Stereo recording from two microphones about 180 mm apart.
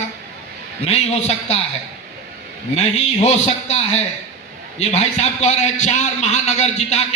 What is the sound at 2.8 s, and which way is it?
A man's voice, 35° left (ahead or behind).